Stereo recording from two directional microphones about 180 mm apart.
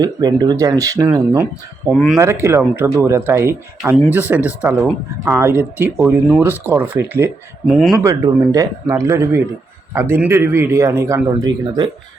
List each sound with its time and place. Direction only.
0.0 s a man's voice: 20° right (ahead or behind)
1.9 s speech: centre (ahead or behind)
2.1 s a man's voice: 15° right (ahead or behind)
7.7 s speech: centre (ahead or behind)
8.0 s a man's voice: 20° right (ahead or behind)